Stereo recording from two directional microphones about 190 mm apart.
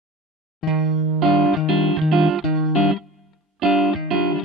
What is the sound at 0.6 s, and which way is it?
Music, centre (ahead or behind).